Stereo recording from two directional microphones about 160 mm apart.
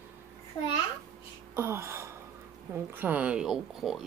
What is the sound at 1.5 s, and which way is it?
Gasp, 15° right (ahead or behind).